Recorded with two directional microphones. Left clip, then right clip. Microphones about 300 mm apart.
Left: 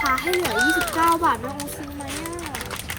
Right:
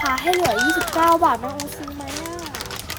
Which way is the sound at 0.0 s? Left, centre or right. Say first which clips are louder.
Right 2 dB; right.